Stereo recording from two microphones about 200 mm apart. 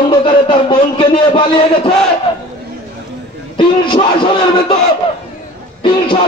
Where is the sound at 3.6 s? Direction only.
25° left (ahead or behind).